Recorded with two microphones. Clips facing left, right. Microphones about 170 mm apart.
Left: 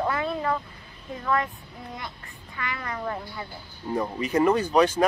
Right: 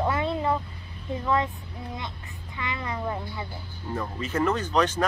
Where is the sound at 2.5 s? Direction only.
20° right (ahead or behind).